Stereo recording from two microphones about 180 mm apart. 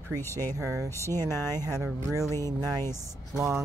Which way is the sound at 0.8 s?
15° left (ahead or behind).